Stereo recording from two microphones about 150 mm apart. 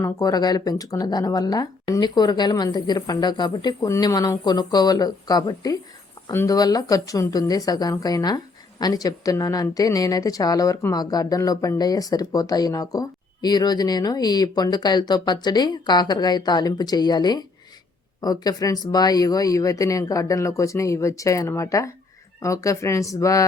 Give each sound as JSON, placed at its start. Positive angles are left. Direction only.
{"t": 0.0, "sound": "a woman's voice", "side_deg": 25}